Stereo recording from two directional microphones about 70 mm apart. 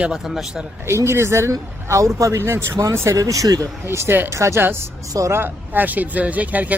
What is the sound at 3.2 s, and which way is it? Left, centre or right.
Speech, right.